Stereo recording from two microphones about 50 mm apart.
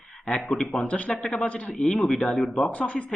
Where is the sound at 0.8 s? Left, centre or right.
Left.